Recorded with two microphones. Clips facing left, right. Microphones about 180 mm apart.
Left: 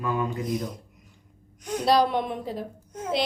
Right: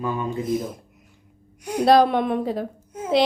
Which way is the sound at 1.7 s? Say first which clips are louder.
Right 5 dB; 55° right (ahead or behind).